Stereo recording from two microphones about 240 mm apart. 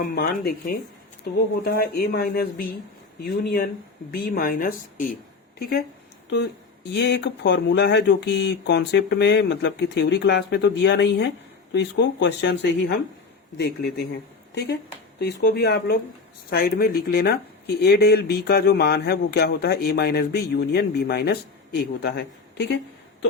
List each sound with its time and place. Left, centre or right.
0.0 s speech: left
15.2 s speech: left